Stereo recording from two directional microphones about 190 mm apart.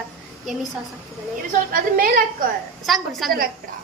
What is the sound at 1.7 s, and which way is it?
Speech, 50° right (ahead or behind).